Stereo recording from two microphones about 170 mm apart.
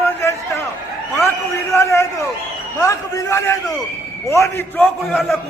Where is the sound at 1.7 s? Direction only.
15° left (ahead or behind).